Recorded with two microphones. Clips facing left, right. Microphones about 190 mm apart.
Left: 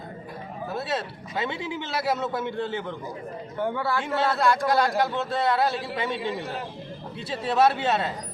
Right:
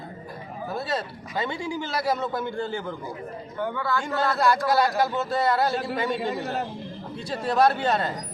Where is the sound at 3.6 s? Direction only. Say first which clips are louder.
Left 1 dB; 30° left (ahead or behind).